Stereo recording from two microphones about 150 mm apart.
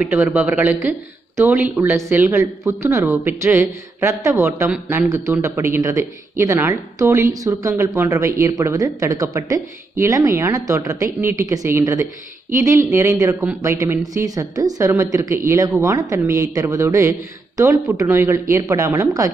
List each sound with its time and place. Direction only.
0.0 s speech: 10° right (ahead or behind)